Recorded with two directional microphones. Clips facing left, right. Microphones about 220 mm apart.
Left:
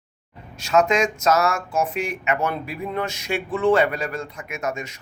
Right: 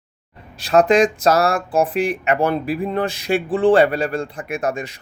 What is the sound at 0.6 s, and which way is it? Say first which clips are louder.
Speech: right 5 dB; 35° right (ahead or behind).